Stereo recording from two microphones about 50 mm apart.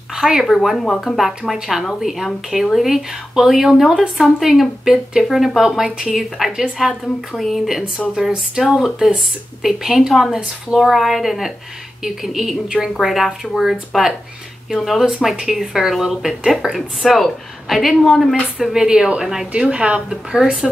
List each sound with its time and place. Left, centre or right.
0.1 s a woman's voice: centre
0.5 s speech: centre
8.1 s a woman's voice: centre
18.7 s a woman's voice: centre
19.7 s a woman's voice: right